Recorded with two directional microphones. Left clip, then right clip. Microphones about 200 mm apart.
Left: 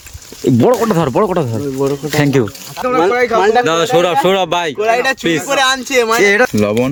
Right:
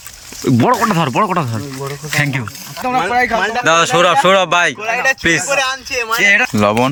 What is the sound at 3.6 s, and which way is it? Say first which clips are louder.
Speech: right 1 dB; 10° left (ahead or behind).